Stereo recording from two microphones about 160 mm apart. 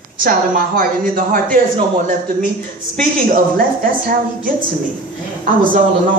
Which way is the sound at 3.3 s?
65° right (ahead or behind).